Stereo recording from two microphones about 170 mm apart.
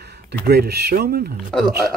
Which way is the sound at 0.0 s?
75° right (ahead or behind).